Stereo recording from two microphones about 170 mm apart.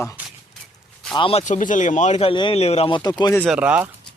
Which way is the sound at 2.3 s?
30° left (ahead or behind).